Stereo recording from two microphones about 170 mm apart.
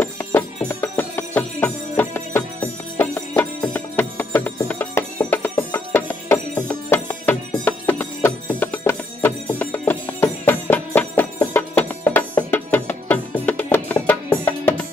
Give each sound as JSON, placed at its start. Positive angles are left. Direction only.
{"t": 0.0, "sound": "music", "side_deg": 10}